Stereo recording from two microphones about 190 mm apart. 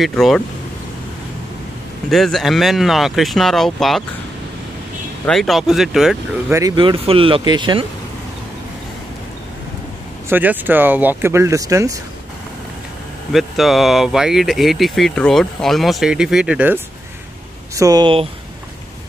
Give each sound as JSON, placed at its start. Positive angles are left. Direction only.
{"t": 0.0, "sound": "speech", "side_deg": 0}
{"t": 2.0, "sound": "speech", "side_deg": 0}
{"t": 5.2, "sound": "speech", "side_deg": 0}
{"t": 6.5, "sound": "speech", "side_deg": -20}
{"t": 10.3, "sound": "speech", "side_deg": -10}
{"t": 13.3, "sound": "speech", "side_deg": 0}
{"t": 17.7, "sound": "speech", "side_deg": -20}